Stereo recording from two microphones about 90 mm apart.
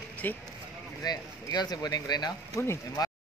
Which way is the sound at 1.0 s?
50° left (ahead or behind).